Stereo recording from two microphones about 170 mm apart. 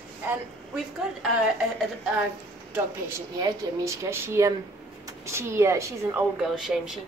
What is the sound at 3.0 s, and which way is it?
Speech, 15° right (ahead or behind).